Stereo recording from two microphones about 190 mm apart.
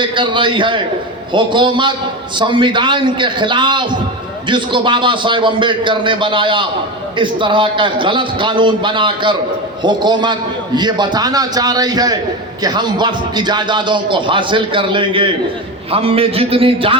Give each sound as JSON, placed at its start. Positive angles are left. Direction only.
{"t": 0.0, "sound": "speech", "side_deg": -25}